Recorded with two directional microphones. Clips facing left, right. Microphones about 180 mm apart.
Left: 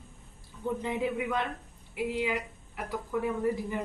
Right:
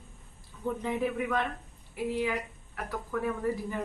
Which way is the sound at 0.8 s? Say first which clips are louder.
Right 1 dB; 15° left (ahead or behind).